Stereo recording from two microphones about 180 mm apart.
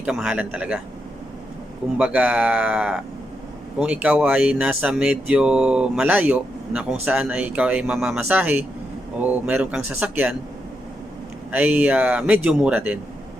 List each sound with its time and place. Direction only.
0.0 s speech: 5° right (ahead or behind)
2.0 s speech: 5° right (ahead or behind)
11.5 s speech: 10° right (ahead or behind)